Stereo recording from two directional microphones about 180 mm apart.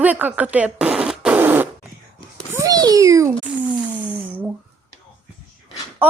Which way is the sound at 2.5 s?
20° right (ahead or behind).